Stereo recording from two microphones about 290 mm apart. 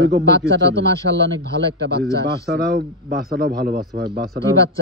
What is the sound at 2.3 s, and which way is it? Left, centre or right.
Speech, right.